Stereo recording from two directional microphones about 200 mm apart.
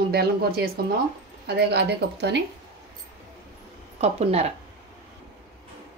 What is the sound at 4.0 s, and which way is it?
Speech, 30° right (ahead or behind).